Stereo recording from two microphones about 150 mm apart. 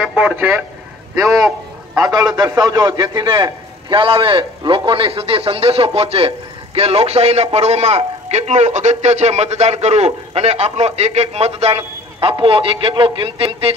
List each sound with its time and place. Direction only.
0.0 s a man's voice: 10° right (ahead or behind)
2.2 s a man's voice: 25° right (ahead or behind)